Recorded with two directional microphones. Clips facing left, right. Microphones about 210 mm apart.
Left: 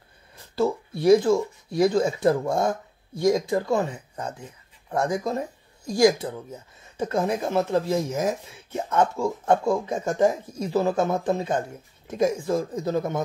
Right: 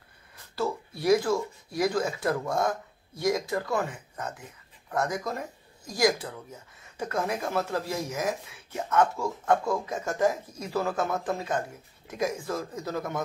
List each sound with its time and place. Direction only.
0.6 s speech: 25° left (ahead or behind)